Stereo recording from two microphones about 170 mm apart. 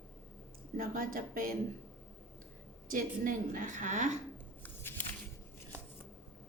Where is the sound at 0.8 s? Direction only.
55° right (ahead or behind).